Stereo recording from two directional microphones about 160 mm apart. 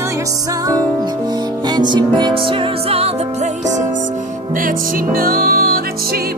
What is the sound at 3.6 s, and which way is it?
Music, 50° right (ahead or behind).